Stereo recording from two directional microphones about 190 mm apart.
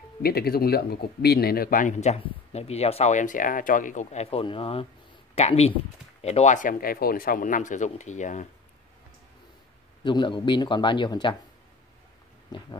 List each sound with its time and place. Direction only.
0.2 s speech: 55° left (ahead or behind)
10.0 s a man's voice: 25° left (ahead or behind)
12.5 s a man's voice: 20° left (ahead or behind)